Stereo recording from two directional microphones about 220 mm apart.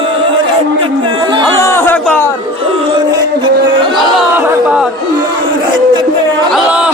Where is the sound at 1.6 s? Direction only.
10° left (ahead or behind).